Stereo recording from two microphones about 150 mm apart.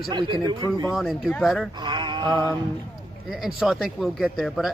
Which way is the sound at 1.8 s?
30° right (ahead or behind).